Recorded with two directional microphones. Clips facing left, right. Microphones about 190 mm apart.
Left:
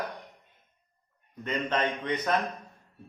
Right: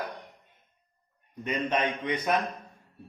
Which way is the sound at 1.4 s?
10° right (ahead or behind).